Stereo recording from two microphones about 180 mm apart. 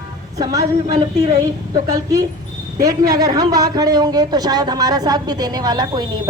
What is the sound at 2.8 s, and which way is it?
A woman's voice, 20° right (ahead or behind).